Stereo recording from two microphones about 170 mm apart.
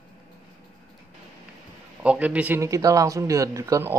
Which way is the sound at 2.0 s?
5° right (ahead or behind).